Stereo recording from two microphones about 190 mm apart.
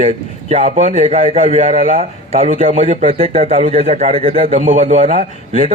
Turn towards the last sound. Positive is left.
turn(degrees=-35)  # may be behind; listen again after turning